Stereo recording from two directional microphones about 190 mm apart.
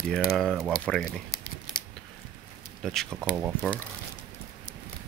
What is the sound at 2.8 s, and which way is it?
Speech, centre (ahead or behind).